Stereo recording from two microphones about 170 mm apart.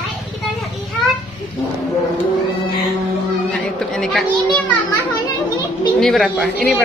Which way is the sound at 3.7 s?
5° left (ahead or behind).